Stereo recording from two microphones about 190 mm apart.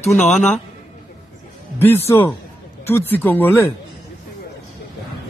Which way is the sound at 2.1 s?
10° left (ahead or behind).